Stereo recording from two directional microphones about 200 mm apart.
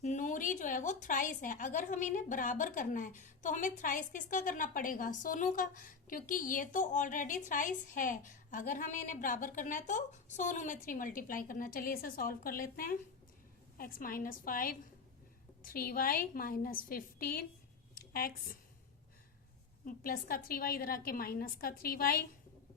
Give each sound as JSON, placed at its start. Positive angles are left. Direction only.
{"t": 0.0, "sound": "a woman's voice", "side_deg": 40}
{"t": 19.8, "sound": "a woman's voice", "side_deg": 45}